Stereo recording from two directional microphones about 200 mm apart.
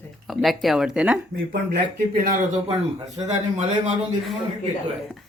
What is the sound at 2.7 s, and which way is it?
Speech, 20° right (ahead or behind).